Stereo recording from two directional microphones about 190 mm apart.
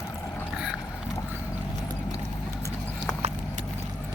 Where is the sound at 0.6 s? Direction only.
5° right (ahead or behind).